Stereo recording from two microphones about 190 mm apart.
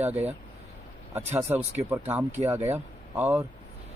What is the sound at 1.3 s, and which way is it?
Speech, 10° right (ahead or behind).